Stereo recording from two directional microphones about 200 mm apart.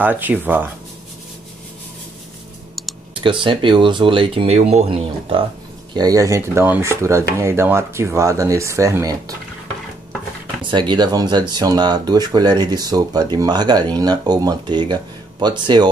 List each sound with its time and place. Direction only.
0.0 s speech: 10° right (ahead or behind)
3.2 s speech: 25° right (ahead or behind)
10.6 s speech: 25° right (ahead or behind)